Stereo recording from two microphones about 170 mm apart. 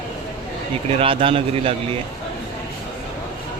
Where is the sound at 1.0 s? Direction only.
30° right (ahead or behind).